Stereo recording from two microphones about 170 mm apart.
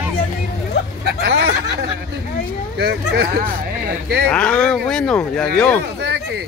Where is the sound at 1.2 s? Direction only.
90° right.